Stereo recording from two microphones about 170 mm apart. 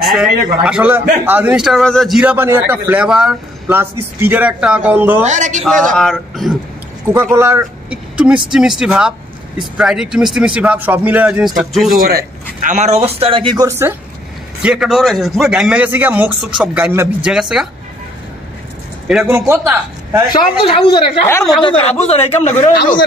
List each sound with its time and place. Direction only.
0.0 s a man's voice: centre (ahead or behind)
5.2 s a man's voice: 45° right (ahead or behind)
5.6 s speech: 5° left (ahead or behind)
7.3 s speech: 15° right (ahead or behind)
12.6 s speech: 40° right (ahead or behind); by 13.9 s 15° right (ahead or behind)
14.6 s speech: 5° right (ahead or behind)
16.9 s a man's voice: 15° right (ahead or behind)
17.3 s speech: 5° right (ahead or behind)
19.0 s speech: 5° right (ahead or behind)
19.3 s a man's voice: 15° right (ahead or behind)
20.6 s a man's voice: 30° left (ahead or behind)
21.3 s a woman's voice: 15° left (ahead or behind)
21.6 s a man's voice: 35° left (ahead or behind)